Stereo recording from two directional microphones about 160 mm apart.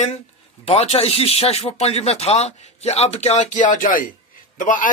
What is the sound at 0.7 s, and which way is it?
Speech, 40° left (ahead or behind).